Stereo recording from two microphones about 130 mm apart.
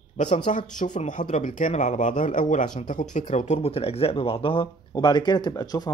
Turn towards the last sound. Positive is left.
turn(degrees=30)  # may be behind; listen again after turning